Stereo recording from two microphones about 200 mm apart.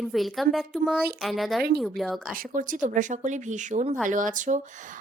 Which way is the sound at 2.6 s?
40° right (ahead or behind).